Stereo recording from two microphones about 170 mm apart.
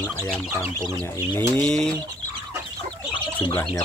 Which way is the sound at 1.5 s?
5° left (ahead or behind).